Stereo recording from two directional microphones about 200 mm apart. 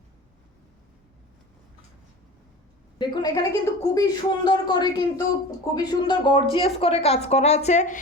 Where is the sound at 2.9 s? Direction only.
20° left (ahead or behind).